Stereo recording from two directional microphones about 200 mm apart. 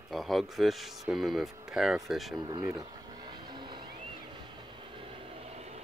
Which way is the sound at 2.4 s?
20° right (ahead or behind).